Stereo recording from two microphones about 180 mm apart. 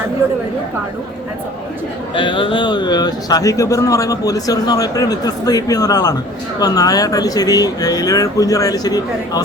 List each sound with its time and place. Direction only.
2.1 s speech: 25° left (ahead or behind)